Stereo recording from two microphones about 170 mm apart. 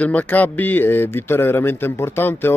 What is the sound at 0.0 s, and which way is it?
A man's voice, 10° left (ahead or behind).